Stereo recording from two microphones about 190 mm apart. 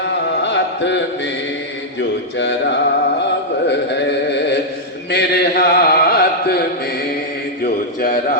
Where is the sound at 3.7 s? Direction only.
65° left (ahead or behind).